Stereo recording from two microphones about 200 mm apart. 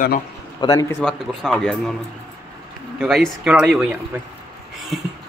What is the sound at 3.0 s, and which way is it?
A man's voice, centre (ahead or behind).